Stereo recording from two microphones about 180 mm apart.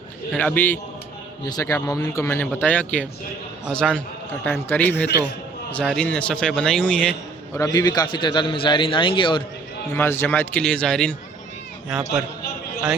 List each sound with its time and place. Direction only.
0.3 s a man's voice: 10° left (ahead or behind)
7.6 s a man's voice: 20° left (ahead or behind)
9.9 s a man's voice: 15° left (ahead or behind); by 12.2 s 5° right (ahead or behind)